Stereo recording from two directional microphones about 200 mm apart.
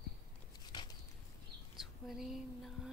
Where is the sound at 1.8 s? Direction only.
Centre (ahead or behind).